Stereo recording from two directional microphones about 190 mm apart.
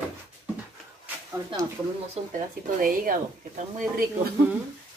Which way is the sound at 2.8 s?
45° right (ahead or behind).